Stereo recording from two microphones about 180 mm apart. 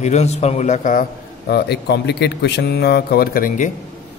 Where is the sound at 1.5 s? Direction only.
65° left (ahead or behind); by 3.7 s 50° left (ahead or behind).